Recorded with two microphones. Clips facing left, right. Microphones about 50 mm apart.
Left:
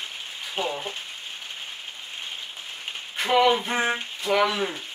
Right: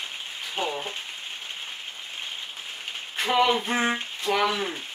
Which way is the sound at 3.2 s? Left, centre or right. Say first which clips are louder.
Left 2 dB; centre.